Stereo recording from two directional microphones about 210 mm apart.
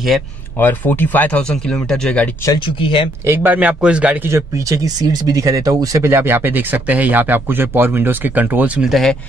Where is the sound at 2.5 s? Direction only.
25° left (ahead or behind).